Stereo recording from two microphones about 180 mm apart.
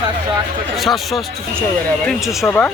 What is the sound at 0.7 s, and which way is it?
Speech, centre (ahead or behind).